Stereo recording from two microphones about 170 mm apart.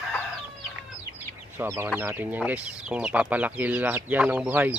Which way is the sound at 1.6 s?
15° right (ahead or behind).